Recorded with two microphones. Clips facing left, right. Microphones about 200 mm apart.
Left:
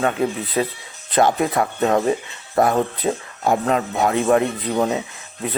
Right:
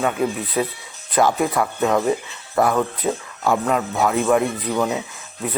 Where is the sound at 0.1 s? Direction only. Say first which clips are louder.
Even; 25° left (ahead or behind).